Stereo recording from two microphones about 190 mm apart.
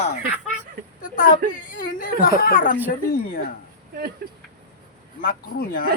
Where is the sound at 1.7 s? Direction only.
45° left (ahead or behind).